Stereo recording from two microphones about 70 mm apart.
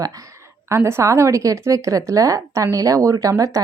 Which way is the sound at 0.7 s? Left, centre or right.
Right.